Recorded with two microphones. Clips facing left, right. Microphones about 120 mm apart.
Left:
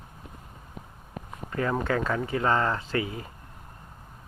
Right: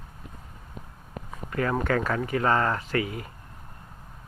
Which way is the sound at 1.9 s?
25° left (ahead or behind).